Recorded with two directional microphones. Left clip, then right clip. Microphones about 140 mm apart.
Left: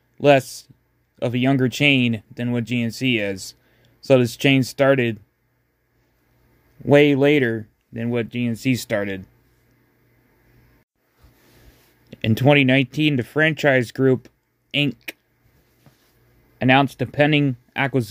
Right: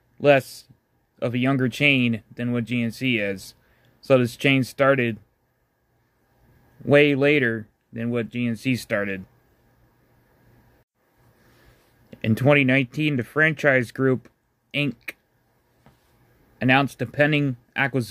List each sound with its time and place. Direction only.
0.2 s speech: 35° left (ahead or behind)
6.8 s speech: 35° left (ahead or behind)
12.1 s speech: 35° left (ahead or behind)
16.5 s speech: 30° left (ahead or behind)